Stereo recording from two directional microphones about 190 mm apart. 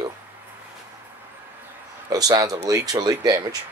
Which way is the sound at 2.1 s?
20° right (ahead or behind).